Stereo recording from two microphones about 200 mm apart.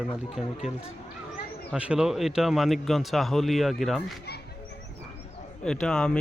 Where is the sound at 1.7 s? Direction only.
5° right (ahead or behind).